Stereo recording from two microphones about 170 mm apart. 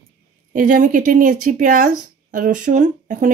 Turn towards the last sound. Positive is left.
turn(degrees=-45)  # may be behind; listen again after turning